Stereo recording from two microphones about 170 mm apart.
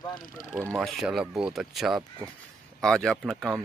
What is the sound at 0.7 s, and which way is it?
Speech, centre (ahead or behind).